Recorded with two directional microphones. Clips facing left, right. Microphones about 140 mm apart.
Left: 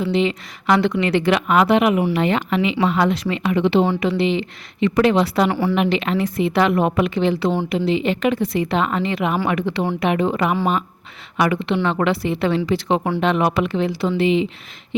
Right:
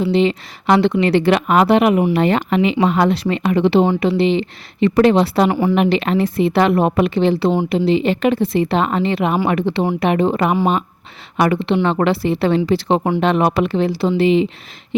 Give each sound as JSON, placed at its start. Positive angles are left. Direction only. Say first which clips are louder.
{"t": 0.0, "sound": "speech", "louder": "right 4 dB", "side_deg": -35}
{"t": 5.5, "sound": "speech", "louder": "right 3 dB", "side_deg": -15}
{"t": 5.7, "sound": "speech", "louder": "right 3 dB", "side_deg": -40}